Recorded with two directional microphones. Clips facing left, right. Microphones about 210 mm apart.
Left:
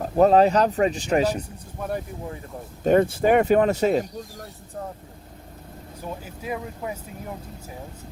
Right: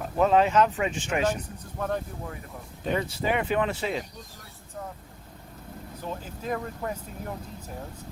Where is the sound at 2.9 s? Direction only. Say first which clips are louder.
Left 9 dB; 50° left (ahead or behind).